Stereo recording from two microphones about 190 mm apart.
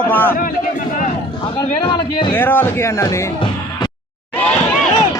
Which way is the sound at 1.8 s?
25° left (ahead or behind).